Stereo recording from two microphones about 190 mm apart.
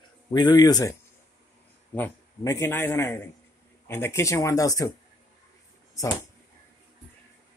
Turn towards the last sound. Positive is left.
turn(degrees=15)  # may be behind; listen again after turning